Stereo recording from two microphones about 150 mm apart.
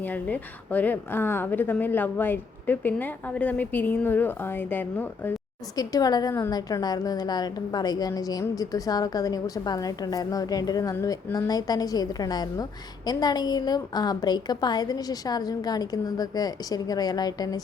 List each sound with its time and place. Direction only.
0.0 s speech: 10° left (ahead or behind)
5.7 s a woman's voice: 25° left (ahead or behind)